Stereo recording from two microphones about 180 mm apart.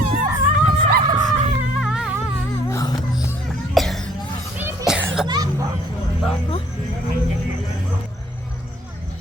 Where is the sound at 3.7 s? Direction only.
Centre (ahead or behind).